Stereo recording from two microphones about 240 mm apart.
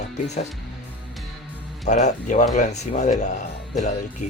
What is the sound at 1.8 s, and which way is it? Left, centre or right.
Speech, left.